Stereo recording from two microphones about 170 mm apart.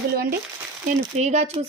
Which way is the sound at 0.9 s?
40° right (ahead or behind).